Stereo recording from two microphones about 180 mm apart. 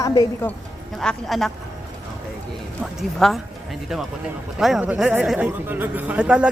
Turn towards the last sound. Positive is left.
turn(degrees=-5)  # may be behind; listen again after turning